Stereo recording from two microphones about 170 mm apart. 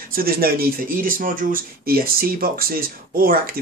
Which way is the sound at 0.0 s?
60° right (ahead or behind).